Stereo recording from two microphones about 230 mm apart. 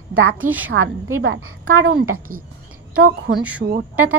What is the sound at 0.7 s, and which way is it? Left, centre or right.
A woman's voice, right.